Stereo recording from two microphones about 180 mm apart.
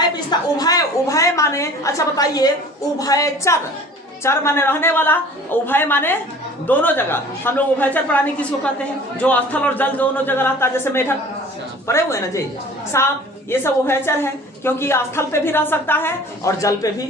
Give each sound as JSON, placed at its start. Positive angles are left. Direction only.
{"t": 0.3, "sound": "a woman's voice", "side_deg": 20}